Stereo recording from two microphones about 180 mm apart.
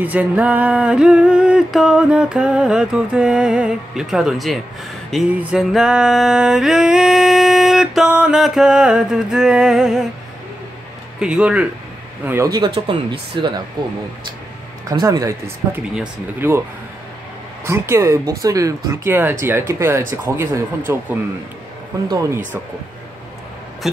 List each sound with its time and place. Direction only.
0.0 s music: 10° right (ahead or behind)
11.1 s music: 5° right (ahead or behind)
12.3 s speech: 15° right (ahead or behind)
14.9 s speech: 20° right (ahead or behind)
17.6 s speech: 15° right (ahead or behind)